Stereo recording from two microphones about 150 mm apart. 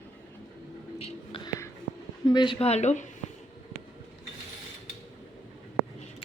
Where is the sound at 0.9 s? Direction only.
40° left (ahead or behind).